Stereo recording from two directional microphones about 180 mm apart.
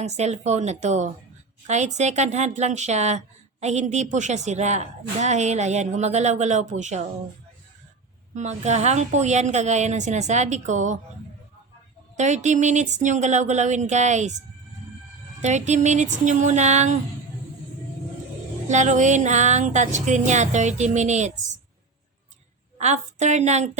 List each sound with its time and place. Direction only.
0.0 s a woman's voice: 40° right (ahead or behind)
8.4 s a woman's voice: 40° right (ahead or behind)
12.1 s a woman's voice: 40° right (ahead or behind)
15.4 s a woman's voice: 40° right (ahead or behind)
18.7 s a woman's voice: 40° right (ahead or behind)
22.8 s a woman's voice: 40° right (ahead or behind)